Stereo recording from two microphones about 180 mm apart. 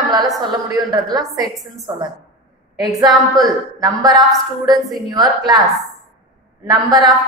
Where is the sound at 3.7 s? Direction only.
20° right (ahead or behind).